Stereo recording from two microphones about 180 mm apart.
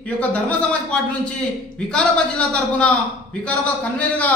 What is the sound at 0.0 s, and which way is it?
A man's voice, 10° left (ahead or behind).